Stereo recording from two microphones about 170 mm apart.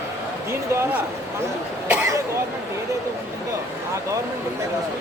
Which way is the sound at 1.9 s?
15° right (ahead or behind).